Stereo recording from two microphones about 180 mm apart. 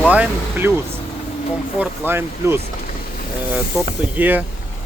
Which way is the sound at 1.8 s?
10° right (ahead or behind).